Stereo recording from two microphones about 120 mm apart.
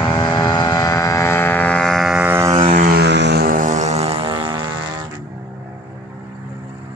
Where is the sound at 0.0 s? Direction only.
35° left (ahead or behind); by 2.1 s 5° left (ahead or behind).